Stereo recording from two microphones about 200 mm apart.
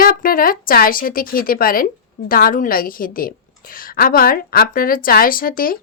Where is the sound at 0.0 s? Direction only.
45° left (ahead or behind).